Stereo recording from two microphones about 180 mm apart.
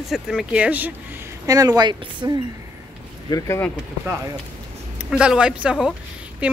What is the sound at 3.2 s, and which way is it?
Speech, 15° left (ahead or behind).